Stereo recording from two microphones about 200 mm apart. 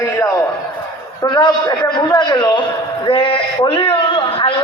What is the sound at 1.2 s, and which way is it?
A man's voice, 20° left (ahead or behind).